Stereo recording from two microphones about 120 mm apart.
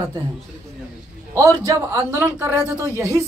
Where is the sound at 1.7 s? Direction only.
20° right (ahead or behind).